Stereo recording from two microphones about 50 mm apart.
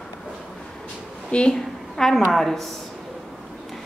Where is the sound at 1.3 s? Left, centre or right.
Centre.